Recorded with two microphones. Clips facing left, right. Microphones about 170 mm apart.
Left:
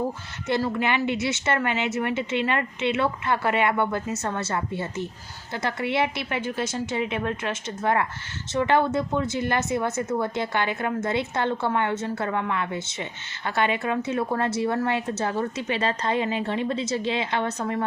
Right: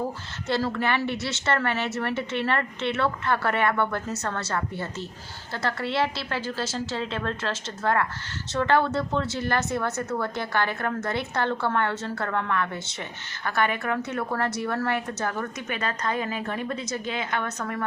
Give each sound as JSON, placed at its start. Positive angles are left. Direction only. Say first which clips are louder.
{"t": 0.4, "sound": "a woman's voice", "louder": "left 1 dB", "side_deg": 15}